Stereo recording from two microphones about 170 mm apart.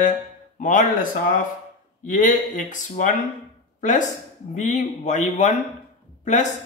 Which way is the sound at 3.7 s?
45° left (ahead or behind).